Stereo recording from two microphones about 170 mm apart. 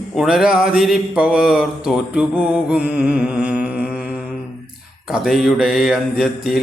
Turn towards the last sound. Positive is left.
turn(degrees=0)  # may be behind; listen again after turning